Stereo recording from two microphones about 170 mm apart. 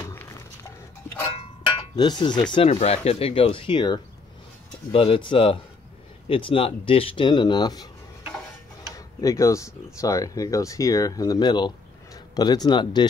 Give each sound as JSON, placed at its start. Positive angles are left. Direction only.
{"t": 1.4, "sound": "a sound", "side_deg": 30}
{"t": 2.5, "sound": "speech", "side_deg": 35}
{"t": 8.9, "sound": "speech", "side_deg": 20}